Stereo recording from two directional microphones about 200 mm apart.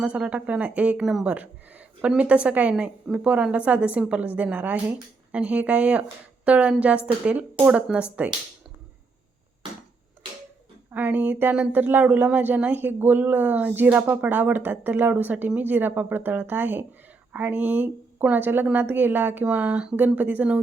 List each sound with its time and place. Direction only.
0.0 s speech: 5° right (ahead or behind)
10.9 s speech: 10° right (ahead or behind)